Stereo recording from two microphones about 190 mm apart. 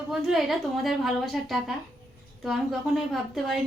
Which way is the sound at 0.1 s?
5° right (ahead or behind).